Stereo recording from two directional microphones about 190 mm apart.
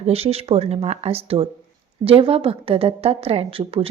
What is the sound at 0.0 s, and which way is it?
A woman's voice, 30° right (ahead or behind).